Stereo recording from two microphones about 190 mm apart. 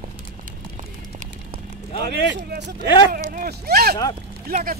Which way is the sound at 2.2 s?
65° right (ahead or behind).